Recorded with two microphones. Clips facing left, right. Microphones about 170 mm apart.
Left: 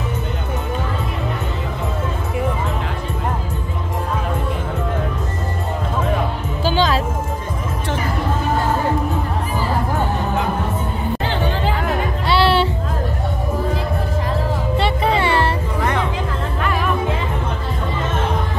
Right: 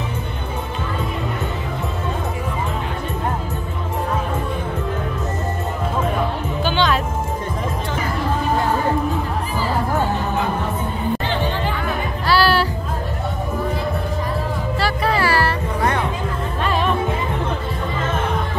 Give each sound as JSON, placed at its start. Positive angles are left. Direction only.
{"t": 6.6, "sound": "music", "side_deg": 35}
{"t": 12.3, "sound": "music", "side_deg": 25}
{"t": 14.8, "sound": "music", "side_deg": 25}
{"t": 16.6, "sound": "music", "side_deg": -25}